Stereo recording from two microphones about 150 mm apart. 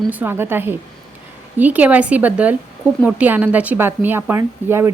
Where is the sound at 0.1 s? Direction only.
15° right (ahead or behind).